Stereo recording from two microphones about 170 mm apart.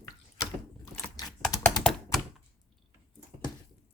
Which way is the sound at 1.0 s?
5° left (ahead or behind).